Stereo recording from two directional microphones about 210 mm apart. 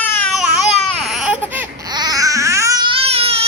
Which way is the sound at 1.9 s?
20° right (ahead or behind).